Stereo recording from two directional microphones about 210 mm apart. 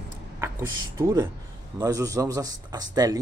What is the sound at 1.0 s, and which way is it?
Speech, 10° right (ahead or behind).